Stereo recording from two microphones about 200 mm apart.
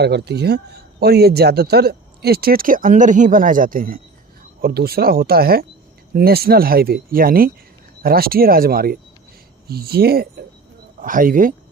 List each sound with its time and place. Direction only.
0.0 s speech: 55° right (ahead or behind)